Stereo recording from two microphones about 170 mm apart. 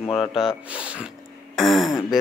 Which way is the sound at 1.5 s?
Centre (ahead or behind).